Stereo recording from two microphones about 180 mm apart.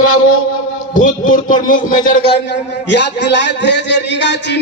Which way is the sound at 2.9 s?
75° left (ahead or behind).